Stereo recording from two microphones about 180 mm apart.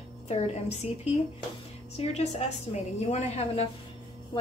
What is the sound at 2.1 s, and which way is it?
A woman's voice, 35° left (ahead or behind).